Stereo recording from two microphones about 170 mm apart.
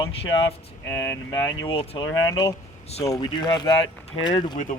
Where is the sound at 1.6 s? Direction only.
30° left (ahead or behind).